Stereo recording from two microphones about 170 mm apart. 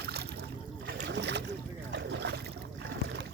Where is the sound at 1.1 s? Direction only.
90° right.